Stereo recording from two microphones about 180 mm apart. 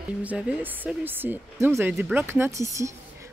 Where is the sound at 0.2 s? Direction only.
10° right (ahead or behind).